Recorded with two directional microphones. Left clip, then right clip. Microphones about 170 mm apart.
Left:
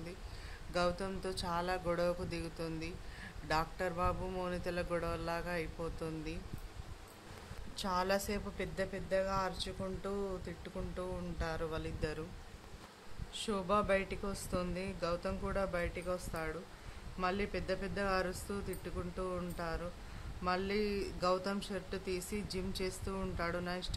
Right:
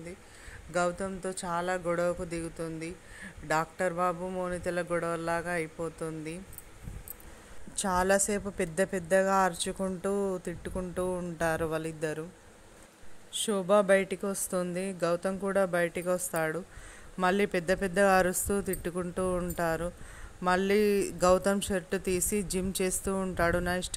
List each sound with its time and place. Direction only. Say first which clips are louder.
0.7 s a man's voice: right 5 dB; 25° right (ahead or behind)
7.7 s a woman's voice: right 8 dB; 40° right (ahead or behind)
13.3 s a woman's voice: right 9 dB; 35° right (ahead or behind)